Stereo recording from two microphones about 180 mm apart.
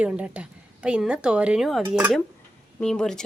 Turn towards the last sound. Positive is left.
turn(degrees=5)  # may be behind; listen again after turning